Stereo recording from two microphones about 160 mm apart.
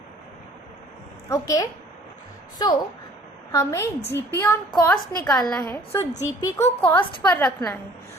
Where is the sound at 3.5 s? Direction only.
15° left (ahead or behind).